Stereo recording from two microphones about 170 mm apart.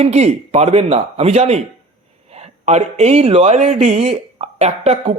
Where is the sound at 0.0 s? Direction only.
40° right (ahead or behind).